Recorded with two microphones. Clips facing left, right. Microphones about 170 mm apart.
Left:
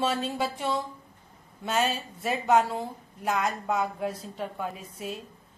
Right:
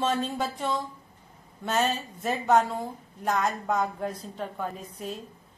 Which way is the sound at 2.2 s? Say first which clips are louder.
Even; 5° left (ahead or behind).